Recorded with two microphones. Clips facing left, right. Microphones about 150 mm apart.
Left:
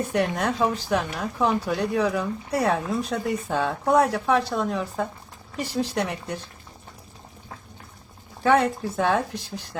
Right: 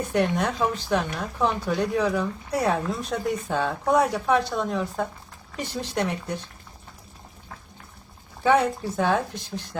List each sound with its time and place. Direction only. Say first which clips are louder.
0.1 s speech: right 4 dB; centre (ahead or behind)
8.4 s speech: even; centre (ahead or behind)